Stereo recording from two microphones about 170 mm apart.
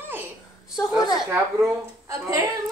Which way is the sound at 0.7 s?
5° right (ahead or behind).